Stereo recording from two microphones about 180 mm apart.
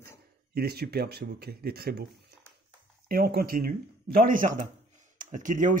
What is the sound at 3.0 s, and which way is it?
Speech, 55° right (ahead or behind).